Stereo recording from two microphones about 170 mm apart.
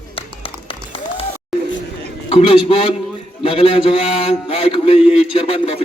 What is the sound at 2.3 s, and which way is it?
A man's voice, 35° left (ahead or behind).